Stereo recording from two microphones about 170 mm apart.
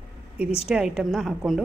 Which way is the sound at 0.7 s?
5° right (ahead or behind).